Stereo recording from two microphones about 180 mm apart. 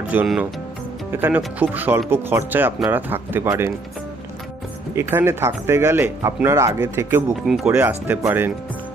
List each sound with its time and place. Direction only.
0.1 s speech: 10° right (ahead or behind)
4.9 s speech: 15° right (ahead or behind)
7.4 s speech: centre (ahead or behind)